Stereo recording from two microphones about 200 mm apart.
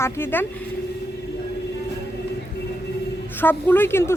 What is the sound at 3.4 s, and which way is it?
Speech, 10° left (ahead or behind).